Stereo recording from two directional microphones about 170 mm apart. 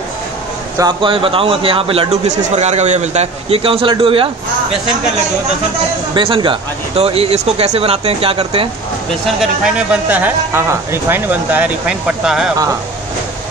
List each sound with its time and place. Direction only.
0.7 s a man's voice: 25° right (ahead or behind)
6.1 s a man's voice: 30° right (ahead or behind)
9.4 s speech: 5° right (ahead or behind)